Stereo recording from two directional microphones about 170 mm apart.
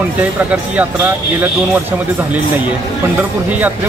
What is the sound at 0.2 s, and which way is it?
Speech, 10° right (ahead or behind).